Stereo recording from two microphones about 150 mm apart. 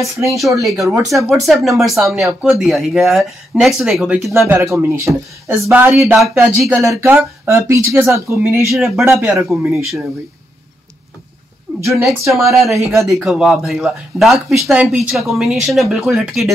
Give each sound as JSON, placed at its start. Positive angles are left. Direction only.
{"t": 0.3, "sound": "speech", "side_deg": 0}
{"t": 4.3, "sound": "speech", "side_deg": -20}
{"t": 8.7, "sound": "speech", "side_deg": 0}
{"t": 11.7, "sound": "a sound", "side_deg": -15}
{"t": 12.4, "sound": "speech", "side_deg": 0}